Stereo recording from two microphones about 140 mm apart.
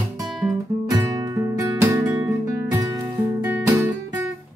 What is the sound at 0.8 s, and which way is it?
Music, 25° right (ahead or behind).